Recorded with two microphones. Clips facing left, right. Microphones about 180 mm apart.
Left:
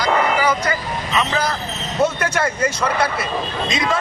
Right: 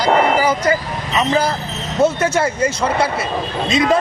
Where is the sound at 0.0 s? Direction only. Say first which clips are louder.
Right 4 dB; 30° right (ahead or behind).